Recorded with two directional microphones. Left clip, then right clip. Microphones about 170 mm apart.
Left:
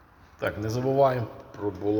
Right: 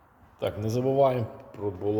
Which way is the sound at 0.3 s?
25° right (ahead or behind).